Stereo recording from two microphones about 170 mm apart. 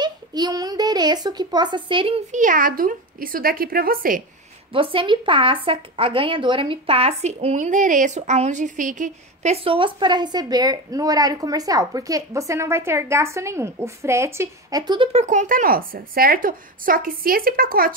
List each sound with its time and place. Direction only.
0.0 s a child's voice: 25° right (ahead or behind)
2.3 s speech: 50° right (ahead or behind)
4.7 s a woman's voice: 30° right (ahead or behind)
15.1 s speech: 45° right (ahead or behind)